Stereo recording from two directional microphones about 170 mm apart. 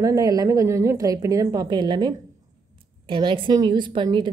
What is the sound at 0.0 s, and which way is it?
A woman's voice, 20° right (ahead or behind).